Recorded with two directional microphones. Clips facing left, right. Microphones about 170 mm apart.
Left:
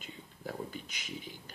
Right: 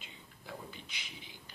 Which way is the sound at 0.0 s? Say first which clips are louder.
Left 9 dB; 45° left (ahead or behind).